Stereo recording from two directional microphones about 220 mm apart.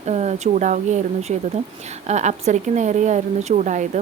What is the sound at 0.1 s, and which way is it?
A woman's voice, 30° right (ahead or behind).